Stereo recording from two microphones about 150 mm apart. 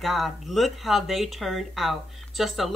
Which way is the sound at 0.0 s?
Centre (ahead or behind).